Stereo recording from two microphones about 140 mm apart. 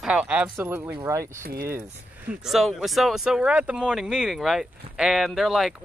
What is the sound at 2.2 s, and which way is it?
Speech, centre (ahead or behind).